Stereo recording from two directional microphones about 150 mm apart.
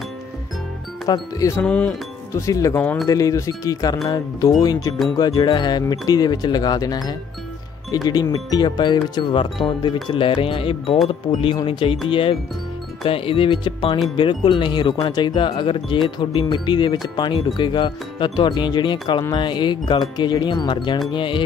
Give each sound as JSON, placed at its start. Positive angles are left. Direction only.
{"t": 1.0, "sound": "speech", "side_deg": 25}
{"t": 1.6, "sound": "music", "side_deg": 10}
{"t": 2.3, "sound": "speech", "side_deg": 20}